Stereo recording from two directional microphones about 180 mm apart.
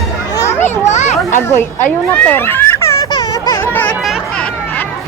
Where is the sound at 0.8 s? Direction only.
40° left (ahead or behind).